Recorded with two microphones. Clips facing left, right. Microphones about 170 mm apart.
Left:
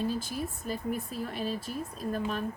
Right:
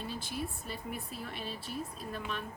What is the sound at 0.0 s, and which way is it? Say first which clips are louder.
Speech: left 6 dB; 40° left (ahead or behind).